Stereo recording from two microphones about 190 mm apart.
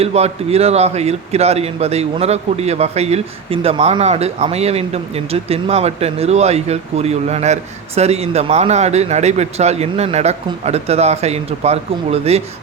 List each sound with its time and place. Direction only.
0.0 s a man's voice: 30° right (ahead or behind)